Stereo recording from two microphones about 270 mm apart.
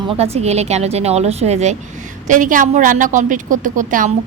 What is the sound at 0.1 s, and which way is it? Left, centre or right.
A woman's voice, right.